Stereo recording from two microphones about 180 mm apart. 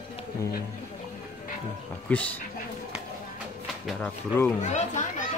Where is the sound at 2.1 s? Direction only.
10° left (ahead or behind).